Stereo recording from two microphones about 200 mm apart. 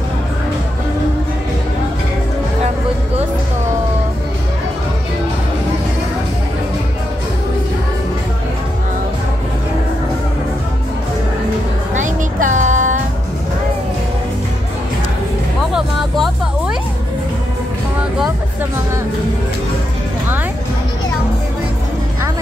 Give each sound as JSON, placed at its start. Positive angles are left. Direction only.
{"t": 11.9, "sound": "music", "side_deg": -40}
{"t": 15.7, "sound": "music", "side_deg": -5}